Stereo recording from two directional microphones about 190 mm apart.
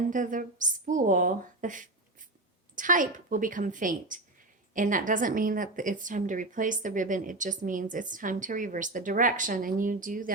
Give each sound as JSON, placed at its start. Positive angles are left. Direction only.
{"t": 0.1, "sound": "a woman's voice", "side_deg": -45}